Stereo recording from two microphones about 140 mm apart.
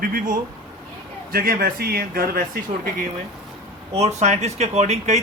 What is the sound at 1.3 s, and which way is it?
Speech, 90° right.